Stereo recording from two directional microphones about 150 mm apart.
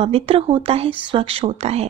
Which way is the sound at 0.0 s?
40° right (ahead or behind).